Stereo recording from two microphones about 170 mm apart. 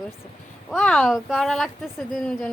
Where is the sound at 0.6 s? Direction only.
5° left (ahead or behind).